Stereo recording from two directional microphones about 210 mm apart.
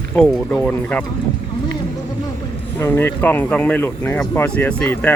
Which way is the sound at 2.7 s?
10° left (ahead or behind).